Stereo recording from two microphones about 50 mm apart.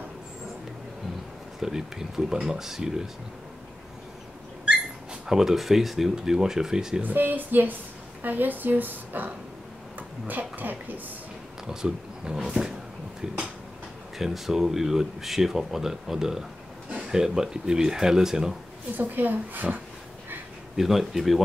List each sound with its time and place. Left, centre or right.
1.6 s speech: centre
5.2 s speech: centre
7.0 s a woman's voice: right
11.6 s speech: centre
14.1 s speech: centre
18.9 s a woman's voice: right
20.7 s speech: centre